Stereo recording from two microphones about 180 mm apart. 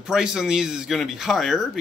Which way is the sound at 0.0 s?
5° right (ahead or behind).